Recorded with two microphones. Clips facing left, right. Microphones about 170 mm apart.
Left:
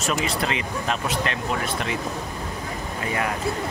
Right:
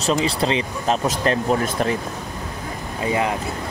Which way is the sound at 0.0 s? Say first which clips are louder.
Right 5 dB; 30° right (ahead or behind).